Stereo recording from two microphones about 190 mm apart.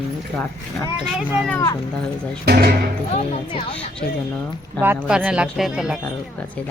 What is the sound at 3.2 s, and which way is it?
Speech, 35° left (ahead or behind).